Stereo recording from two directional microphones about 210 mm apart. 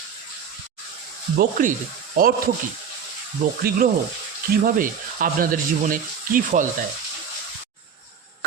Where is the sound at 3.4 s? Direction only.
40° right (ahead or behind).